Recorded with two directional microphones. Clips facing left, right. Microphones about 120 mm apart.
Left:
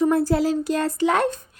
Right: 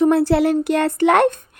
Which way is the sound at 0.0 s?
75° right (ahead or behind).